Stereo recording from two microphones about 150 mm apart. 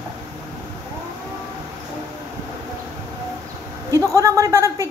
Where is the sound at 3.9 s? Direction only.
20° right (ahead or behind).